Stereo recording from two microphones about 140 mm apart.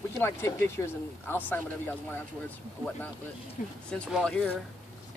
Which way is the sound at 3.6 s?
65° left (ahead or behind).